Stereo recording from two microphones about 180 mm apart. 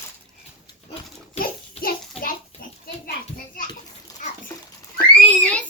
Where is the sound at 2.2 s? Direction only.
35° left (ahead or behind).